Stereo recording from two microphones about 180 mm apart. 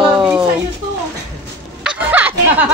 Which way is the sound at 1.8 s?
5° right (ahead or behind).